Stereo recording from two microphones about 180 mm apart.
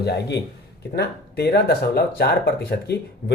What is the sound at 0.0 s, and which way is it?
Speech, 65° left (ahead or behind).